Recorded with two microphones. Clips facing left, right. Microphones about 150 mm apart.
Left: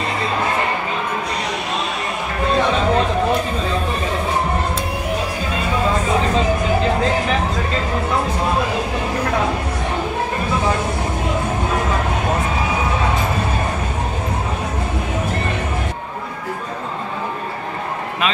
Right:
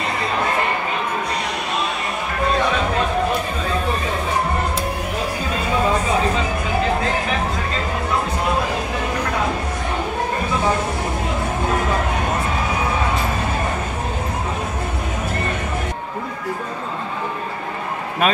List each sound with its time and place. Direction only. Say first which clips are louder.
18.2 s a man's voice: right 3 dB; 50° right (ahead or behind)